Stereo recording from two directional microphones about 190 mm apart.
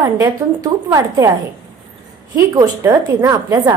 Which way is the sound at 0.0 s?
15° right (ahead or behind).